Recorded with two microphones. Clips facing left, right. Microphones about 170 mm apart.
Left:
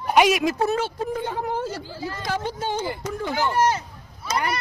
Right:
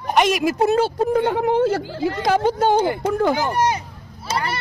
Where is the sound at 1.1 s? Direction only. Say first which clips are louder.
Right 9 dB; 70° right (ahead or behind).